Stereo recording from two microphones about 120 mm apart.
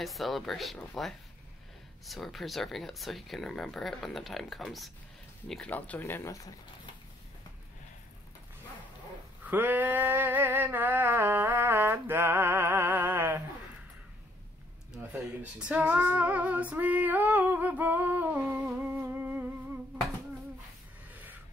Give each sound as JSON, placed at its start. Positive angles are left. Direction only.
{"t": 0.0, "sound": "speech", "side_deg": 0}
{"t": 5.7, "sound": "speech", "side_deg": 15}
{"t": 9.4, "sound": "a sound", "side_deg": -15}
{"t": 15.1, "sound": "female singing", "side_deg": -10}
{"t": 18.7, "sound": "humming", "side_deg": -15}
{"t": 21.1, "sound": "music", "side_deg": -15}